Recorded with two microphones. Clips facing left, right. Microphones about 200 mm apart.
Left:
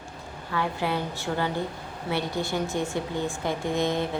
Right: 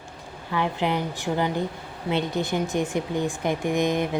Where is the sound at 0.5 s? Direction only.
20° right (ahead or behind).